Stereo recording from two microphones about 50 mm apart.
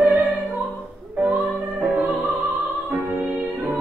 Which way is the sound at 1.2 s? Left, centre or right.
Right.